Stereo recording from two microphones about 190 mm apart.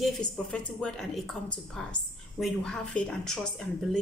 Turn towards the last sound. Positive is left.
turn(degrees=5)  # may be behind; listen again after turning